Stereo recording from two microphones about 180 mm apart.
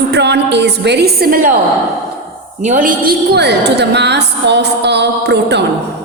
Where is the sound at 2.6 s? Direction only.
45° right (ahead or behind); by 5.7 s 70° right (ahead or behind).